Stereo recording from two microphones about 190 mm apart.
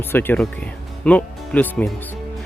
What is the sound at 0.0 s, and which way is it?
Speech, 10° left (ahead or behind).